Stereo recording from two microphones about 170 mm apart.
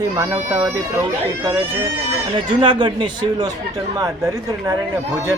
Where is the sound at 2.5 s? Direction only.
25° right (ahead or behind).